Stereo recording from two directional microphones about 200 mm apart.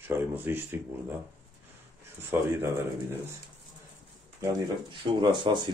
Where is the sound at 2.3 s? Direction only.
10° right (ahead or behind).